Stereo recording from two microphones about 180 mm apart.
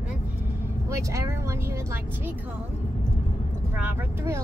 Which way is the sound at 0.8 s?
15° right (ahead or behind).